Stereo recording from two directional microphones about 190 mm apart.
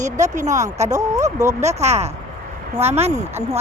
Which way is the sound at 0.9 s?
15° right (ahead or behind).